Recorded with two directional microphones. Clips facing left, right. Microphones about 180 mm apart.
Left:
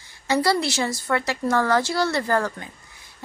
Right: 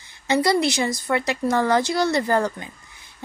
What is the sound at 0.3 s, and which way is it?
A woman's voice, 15° right (ahead or behind).